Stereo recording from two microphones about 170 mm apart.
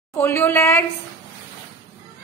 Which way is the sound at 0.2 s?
15° left (ahead or behind).